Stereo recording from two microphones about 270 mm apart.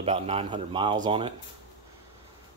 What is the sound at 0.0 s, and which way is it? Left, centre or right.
Speech, right.